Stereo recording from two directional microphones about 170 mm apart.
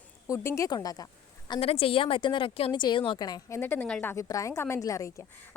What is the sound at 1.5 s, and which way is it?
Speech, 35° left (ahead or behind).